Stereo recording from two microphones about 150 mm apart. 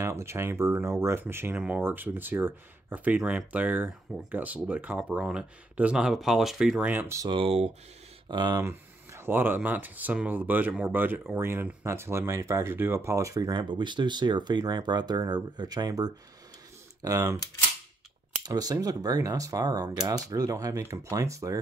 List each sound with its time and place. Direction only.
0.0 s speech: 20° right (ahead or behind)
7.2 s speech: 35° right (ahead or behind)
8.3 s speech: 30° right (ahead or behind)
8.5 s speech: 15° right (ahead or behind)
18.4 s speech: 25° right (ahead or behind)